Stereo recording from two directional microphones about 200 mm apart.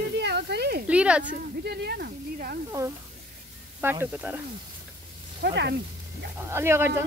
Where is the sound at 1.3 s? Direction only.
50° right (ahead or behind).